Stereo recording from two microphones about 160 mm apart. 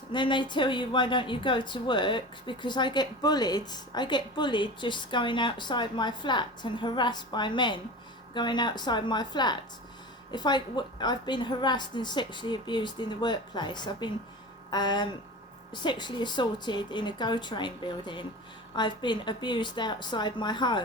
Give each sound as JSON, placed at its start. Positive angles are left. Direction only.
{"t": 0.1, "sound": "speech", "side_deg": 30}